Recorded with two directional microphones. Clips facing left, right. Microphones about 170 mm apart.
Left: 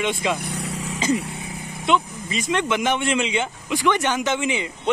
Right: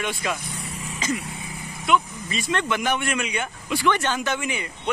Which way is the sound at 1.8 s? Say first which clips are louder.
Left 1 dB; 20° left (ahead or behind).